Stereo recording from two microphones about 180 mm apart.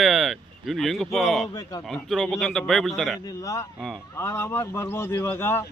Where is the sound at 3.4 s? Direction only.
15° left (ahead or behind).